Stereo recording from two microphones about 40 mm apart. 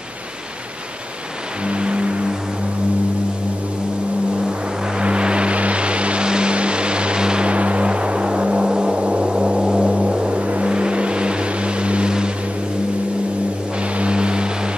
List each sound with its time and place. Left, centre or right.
1.7 s vehicle: right
4.5 s vehicle: right
13.9 s music: right